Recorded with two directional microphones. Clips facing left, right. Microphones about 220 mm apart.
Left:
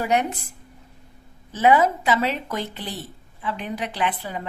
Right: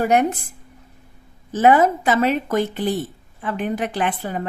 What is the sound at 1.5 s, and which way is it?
Speech, 50° right (ahead or behind).